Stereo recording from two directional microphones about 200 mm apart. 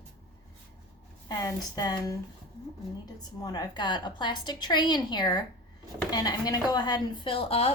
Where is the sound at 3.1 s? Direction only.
20° left (ahead or behind).